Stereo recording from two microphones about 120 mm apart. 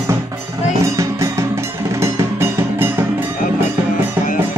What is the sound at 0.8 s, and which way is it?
Music, 25° right (ahead or behind).